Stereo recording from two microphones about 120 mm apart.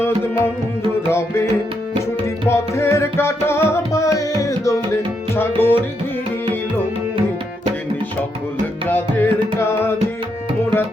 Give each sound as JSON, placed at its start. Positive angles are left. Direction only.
{"t": 1.0, "sound": "music", "side_deg": 20}
{"t": 2.5, "sound": "music", "side_deg": 20}
{"t": 5.3, "sound": "tabla", "side_deg": 20}
{"t": 8.9, "sound": "music", "side_deg": 15}